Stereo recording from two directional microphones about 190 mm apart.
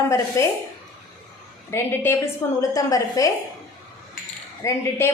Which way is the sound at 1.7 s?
10° left (ahead or behind).